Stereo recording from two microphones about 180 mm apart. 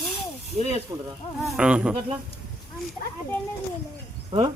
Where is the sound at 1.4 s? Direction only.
5° right (ahead or behind).